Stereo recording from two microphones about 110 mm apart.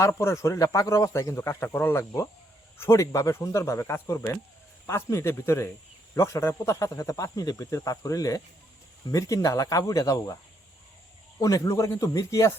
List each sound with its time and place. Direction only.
0.0 s speech: 25° left (ahead or behind)
11.3 s speech: 30° left (ahead or behind)